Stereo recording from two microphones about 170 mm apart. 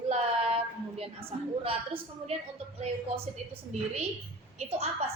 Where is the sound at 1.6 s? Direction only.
35° right (ahead or behind).